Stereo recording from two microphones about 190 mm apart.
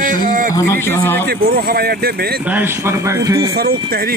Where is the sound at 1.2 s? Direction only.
55° right (ahead or behind).